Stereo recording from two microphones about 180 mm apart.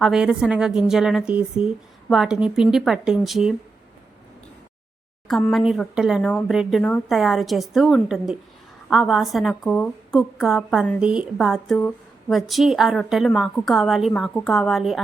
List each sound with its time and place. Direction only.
0.0 s a woman's voice: 5° right (ahead or behind)
5.5 s a woman's voice: centre (ahead or behind)